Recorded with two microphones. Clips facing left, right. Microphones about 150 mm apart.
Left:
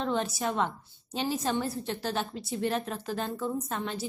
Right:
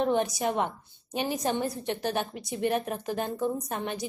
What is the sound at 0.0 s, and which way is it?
A woman's voice, 15° right (ahead or behind).